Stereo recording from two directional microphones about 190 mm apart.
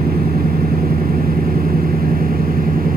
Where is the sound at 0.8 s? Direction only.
50° right (ahead or behind).